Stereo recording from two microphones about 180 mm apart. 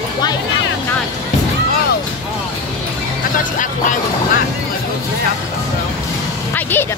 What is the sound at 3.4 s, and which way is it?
Speech, 45° left (ahead or behind).